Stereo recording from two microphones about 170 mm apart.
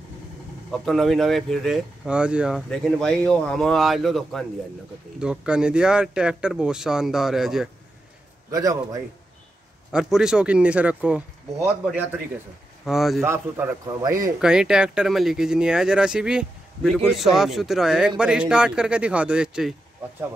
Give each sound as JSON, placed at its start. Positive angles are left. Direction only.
{"t": 0.7, "sound": "speech", "side_deg": 0}
{"t": 8.5, "sound": "a man's voice", "side_deg": -20}
{"t": 9.9, "sound": "speech", "side_deg": -5}
{"t": 13.2, "sound": "speech", "side_deg": -15}
{"t": 14.4, "sound": "speech", "side_deg": -5}